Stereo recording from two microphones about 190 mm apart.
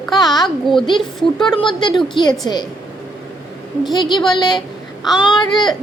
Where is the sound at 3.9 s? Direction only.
25° left (ahead or behind).